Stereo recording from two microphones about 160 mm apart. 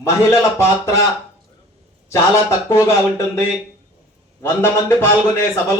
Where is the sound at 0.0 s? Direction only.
15° left (ahead or behind).